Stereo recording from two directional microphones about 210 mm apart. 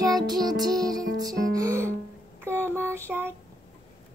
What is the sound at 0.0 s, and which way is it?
Music, 20° right (ahead or behind).